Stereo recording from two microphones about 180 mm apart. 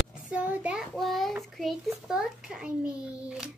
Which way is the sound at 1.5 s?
Centre (ahead or behind).